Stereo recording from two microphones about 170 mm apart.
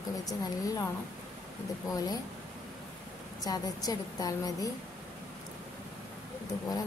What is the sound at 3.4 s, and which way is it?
A woman's voice, 20° left (ahead or behind).